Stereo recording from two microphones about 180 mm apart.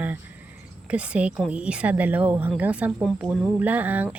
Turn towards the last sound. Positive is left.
turn(degrees=-10)  # may be behind; listen again after turning